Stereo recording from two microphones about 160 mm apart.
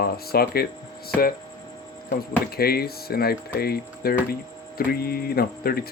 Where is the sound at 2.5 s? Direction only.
75° left (ahead or behind).